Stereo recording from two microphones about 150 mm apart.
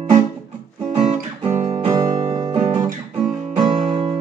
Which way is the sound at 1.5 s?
45° right (ahead or behind).